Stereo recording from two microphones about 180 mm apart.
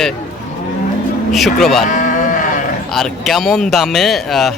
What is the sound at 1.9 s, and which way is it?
Livestock, 45° left (ahead or behind).